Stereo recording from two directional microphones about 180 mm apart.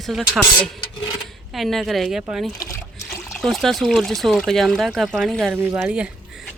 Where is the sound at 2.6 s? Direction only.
15° left (ahead or behind).